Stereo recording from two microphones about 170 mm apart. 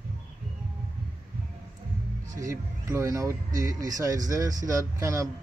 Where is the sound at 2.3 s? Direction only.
20° right (ahead or behind).